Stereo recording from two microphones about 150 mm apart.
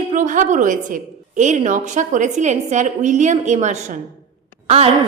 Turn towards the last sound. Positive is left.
turn(degrees=-45)  # may be behind; listen again after turning